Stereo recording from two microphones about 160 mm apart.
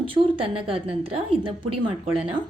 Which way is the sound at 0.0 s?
35° right (ahead or behind).